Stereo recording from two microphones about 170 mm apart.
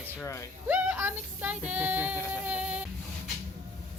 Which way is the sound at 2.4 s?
10° right (ahead or behind).